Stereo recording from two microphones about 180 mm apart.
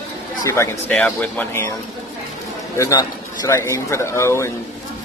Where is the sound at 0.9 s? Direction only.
5° left (ahead or behind).